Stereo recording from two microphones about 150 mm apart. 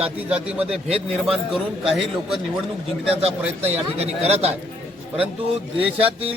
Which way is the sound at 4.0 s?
45° right (ahead or behind).